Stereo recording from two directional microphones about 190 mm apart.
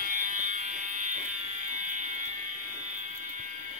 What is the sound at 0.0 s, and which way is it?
Fire alarm, 45° right (ahead or behind).